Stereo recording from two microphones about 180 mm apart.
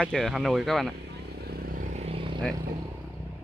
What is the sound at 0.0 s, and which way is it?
Speech, centre (ahead or behind).